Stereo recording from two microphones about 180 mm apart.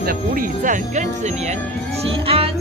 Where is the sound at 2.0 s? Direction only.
30° right (ahead or behind).